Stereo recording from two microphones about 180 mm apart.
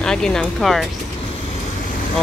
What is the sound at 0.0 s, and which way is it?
Speech, 5° left (ahead or behind).